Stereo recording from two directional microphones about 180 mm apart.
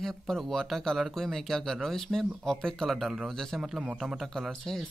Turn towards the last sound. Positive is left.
turn(degrees=0)  # may be behind; listen again after turning